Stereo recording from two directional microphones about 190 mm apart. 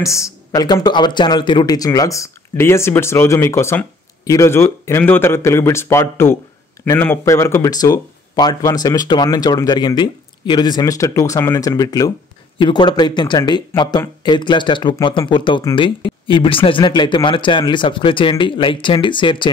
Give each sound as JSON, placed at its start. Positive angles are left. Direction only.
{"t": 0.0, "sound": "speech", "side_deg": 15}